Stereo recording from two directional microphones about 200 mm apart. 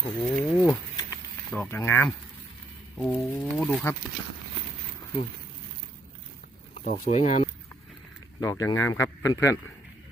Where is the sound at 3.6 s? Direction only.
10° left (ahead or behind).